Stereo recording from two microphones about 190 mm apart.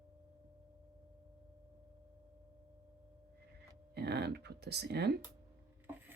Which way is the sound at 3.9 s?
60° right (ahead or behind).